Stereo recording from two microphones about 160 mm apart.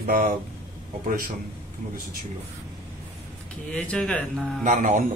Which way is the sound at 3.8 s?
5° left (ahead or behind).